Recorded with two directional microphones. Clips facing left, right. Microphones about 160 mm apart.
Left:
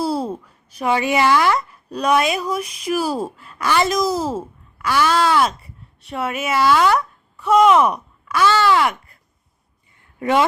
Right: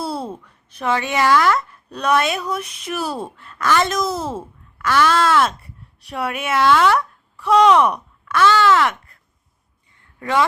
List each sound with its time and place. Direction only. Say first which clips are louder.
0.1 s a sound: left 4 dB; 10° left (ahead or behind)
1.5 s speech: left 2 dB; 10° left (ahead or behind)
10.2 s speech: left 2 dB; 20° left (ahead or behind)